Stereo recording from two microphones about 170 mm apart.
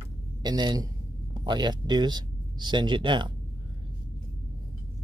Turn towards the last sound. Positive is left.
turn(degrees=-30)  # may be behind; listen again after turning